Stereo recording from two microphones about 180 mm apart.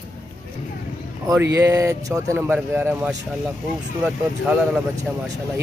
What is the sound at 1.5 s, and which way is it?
Speech, 15° right (ahead or behind).